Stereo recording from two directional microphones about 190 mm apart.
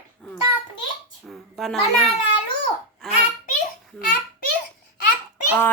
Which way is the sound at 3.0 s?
Centre (ahead or behind).